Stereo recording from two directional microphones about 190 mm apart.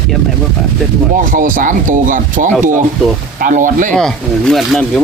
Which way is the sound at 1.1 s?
45° right (ahead or behind).